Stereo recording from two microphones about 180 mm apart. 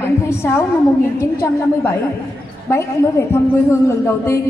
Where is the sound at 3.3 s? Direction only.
15° left (ahead or behind).